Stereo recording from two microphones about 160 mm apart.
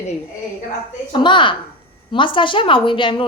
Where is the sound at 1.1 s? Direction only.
30° left (ahead or behind).